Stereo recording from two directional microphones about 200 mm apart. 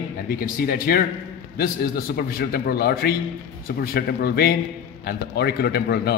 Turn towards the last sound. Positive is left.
turn(degrees=55)  # may be behind; listen again after turning